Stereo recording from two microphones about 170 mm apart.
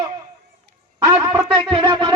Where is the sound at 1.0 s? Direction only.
15° right (ahead or behind).